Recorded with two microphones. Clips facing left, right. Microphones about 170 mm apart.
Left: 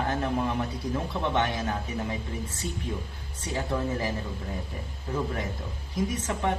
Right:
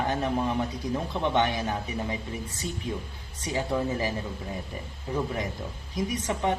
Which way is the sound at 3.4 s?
15° right (ahead or behind).